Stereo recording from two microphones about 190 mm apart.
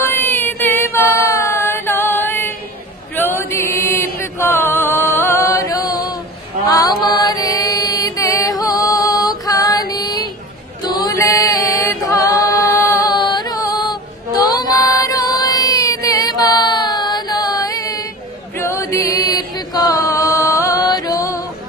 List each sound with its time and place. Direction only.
0.0 s a sound: 10° left (ahead or behind)
3.2 s chant: 10° left (ahead or behind)
6.7 s mantra: 20° left (ahead or behind)
9.5 s music: 20° left (ahead or behind)
10.8 s a capella: 20° left (ahead or behind)
14.4 s music: 20° left (ahead or behind)